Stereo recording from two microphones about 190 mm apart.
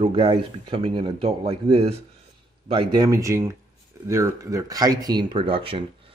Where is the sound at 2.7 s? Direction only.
20° right (ahead or behind).